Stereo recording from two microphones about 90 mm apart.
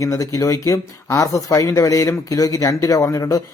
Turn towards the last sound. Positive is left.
turn(degrees=40)  # may be behind; listen again after turning